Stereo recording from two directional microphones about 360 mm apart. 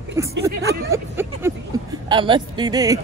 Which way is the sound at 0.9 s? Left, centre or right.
Centre.